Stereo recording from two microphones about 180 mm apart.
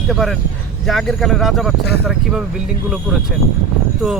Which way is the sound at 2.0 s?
5° right (ahead or behind).